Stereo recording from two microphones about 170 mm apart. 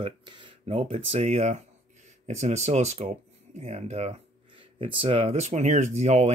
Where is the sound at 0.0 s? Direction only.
30° right (ahead or behind).